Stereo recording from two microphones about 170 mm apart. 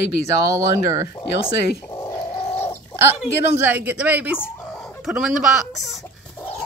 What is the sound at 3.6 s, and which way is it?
Speech, 10° right (ahead or behind).